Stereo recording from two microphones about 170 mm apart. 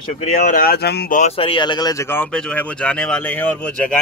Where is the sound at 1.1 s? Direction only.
40° left (ahead or behind).